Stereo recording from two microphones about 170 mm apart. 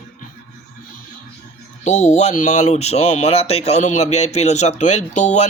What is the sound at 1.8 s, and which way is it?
Speech, 45° left (ahead or behind).